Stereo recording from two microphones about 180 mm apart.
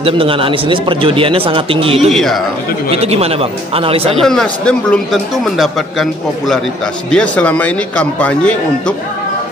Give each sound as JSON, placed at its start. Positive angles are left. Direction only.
{"t": 0.0, "sound": "a man's voice", "side_deg": -30}
{"t": 2.0, "sound": "a man's voice", "side_deg": 0}
{"t": 2.9, "sound": "speech", "side_deg": -35}
{"t": 4.2, "sound": "a man's voice", "side_deg": 0}